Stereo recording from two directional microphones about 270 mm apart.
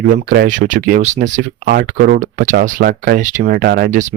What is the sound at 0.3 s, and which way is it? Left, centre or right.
Speech, right.